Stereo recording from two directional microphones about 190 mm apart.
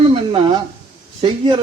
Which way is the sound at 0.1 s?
25° right (ahead or behind).